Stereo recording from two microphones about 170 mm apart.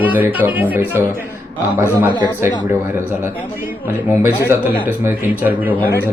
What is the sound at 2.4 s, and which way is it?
Speech, 15° right (ahead or behind).